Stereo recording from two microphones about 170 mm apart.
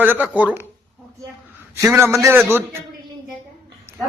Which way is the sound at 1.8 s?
10° right (ahead or behind).